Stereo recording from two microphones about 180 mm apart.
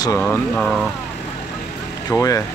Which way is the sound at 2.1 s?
20° left (ahead or behind).